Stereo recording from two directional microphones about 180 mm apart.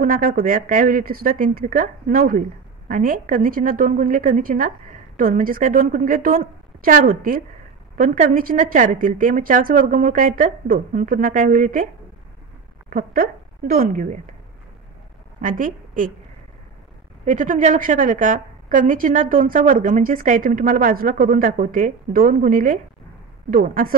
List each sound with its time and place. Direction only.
0.0 s a woman's voice: 50° right (ahead or behind)
12.9 s a woman's voice: 55° right (ahead or behind)
15.4 s a woman's voice: 50° right (ahead or behind)
17.2 s a woman's voice: 45° right (ahead or behind)